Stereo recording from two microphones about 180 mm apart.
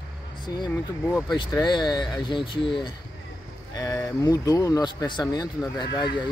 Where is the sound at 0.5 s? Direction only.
20° left (ahead or behind).